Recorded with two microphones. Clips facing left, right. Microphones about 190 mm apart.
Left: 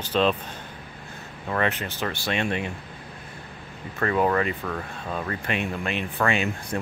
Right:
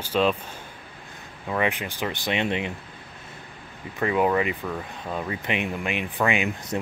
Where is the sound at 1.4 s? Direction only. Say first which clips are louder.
Even; 10° right (ahead or behind).